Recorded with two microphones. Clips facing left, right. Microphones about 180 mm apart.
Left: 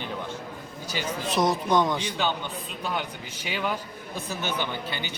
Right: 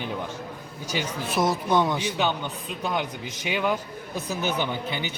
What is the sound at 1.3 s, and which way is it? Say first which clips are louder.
Speech: even; 5° right (ahead or behind).